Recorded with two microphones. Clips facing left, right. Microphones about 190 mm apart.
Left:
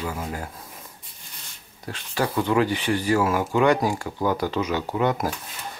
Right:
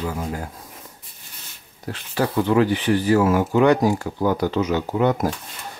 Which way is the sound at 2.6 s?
10° left (ahead or behind).